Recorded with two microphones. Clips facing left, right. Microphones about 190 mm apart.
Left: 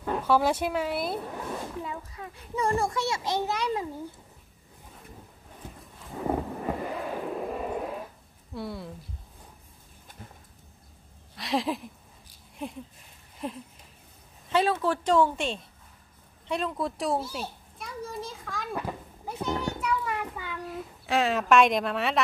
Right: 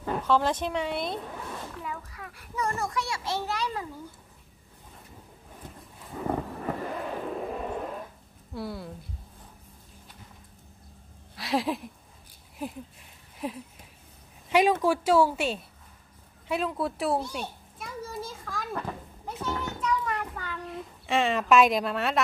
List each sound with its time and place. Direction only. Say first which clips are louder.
0.2 s speech: left 1 dB; 10° left (ahead or behind)
1.8 s a child's voice: left 2 dB; 25° left (ahead or behind)
6.2 s a sound: left 1 dB; 10° left (ahead or behind)
8.5 s speech: even; centre (ahead or behind)
11.3 s speech: even; centre (ahead or behind)
14.5 s a woman's voice: right 3 dB; 15° right (ahead or behind)
16.4 s children playing: right 1 dB; 5° right (ahead or behind)
18.8 s a sound: left 1 dB; 10° left (ahead or behind)